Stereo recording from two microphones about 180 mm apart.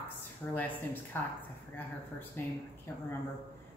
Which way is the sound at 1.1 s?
10° left (ahead or behind).